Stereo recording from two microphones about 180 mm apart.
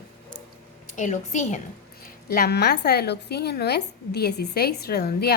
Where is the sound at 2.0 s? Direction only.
60° left (ahead or behind).